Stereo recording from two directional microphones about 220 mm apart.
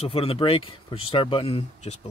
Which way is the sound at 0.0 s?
25° left (ahead or behind).